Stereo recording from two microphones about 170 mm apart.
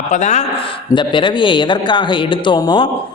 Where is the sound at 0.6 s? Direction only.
30° left (ahead or behind).